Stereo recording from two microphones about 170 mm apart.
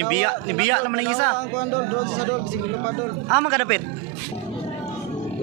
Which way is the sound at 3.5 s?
5° right (ahead or behind).